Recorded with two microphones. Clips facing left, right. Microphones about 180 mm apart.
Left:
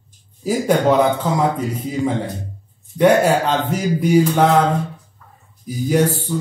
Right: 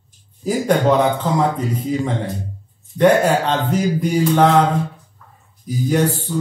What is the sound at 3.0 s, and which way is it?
Speech, 10° left (ahead or behind).